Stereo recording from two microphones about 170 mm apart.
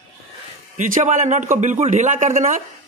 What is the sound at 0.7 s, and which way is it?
Speech, 45° right (ahead or behind).